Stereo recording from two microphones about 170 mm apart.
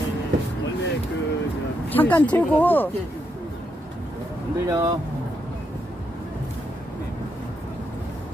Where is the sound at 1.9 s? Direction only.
10° left (ahead or behind).